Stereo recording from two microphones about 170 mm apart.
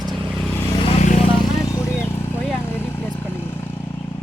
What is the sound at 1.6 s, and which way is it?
Vehicle, 15° left (ahead or behind).